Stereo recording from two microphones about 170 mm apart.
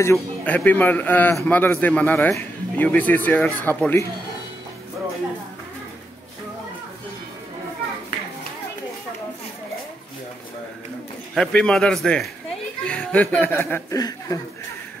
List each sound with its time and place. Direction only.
0.0 s a man's voice: 15° left (ahead or behind)
11.3 s a man's voice: 5° left (ahead or behind); by 14.4 s 20° left (ahead or behind)